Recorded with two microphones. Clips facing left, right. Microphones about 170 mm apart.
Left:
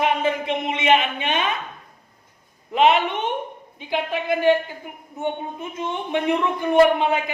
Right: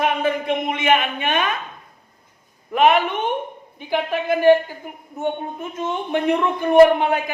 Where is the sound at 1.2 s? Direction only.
55° right (ahead or behind).